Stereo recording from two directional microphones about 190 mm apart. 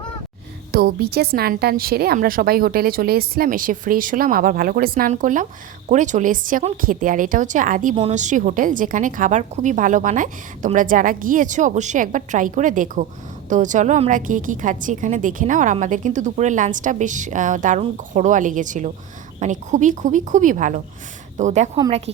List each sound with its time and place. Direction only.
0.7 s a woman's voice: 50° right (ahead or behind); by 22.1 s 35° right (ahead or behind)